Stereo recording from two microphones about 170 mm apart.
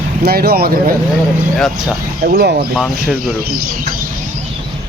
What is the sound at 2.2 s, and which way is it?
Speech, 65° right (ahead or behind).